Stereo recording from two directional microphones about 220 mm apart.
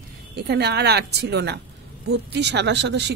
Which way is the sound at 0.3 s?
50° right (ahead or behind).